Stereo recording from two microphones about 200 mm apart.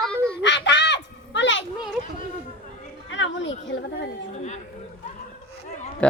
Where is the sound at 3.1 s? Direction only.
65° left (ahead or behind).